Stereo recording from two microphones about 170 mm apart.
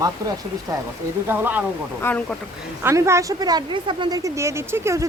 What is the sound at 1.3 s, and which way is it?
Speech, 10° right (ahead or behind).